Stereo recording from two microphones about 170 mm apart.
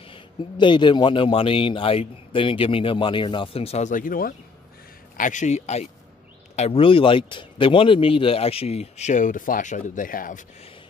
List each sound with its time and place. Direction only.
0.1 s a man's voice: 30° left (ahead or behind); by 10.4 s 55° left (ahead or behind)